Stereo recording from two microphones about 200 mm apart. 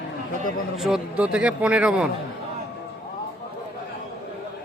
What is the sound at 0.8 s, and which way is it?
A man's voice, centre (ahead or behind).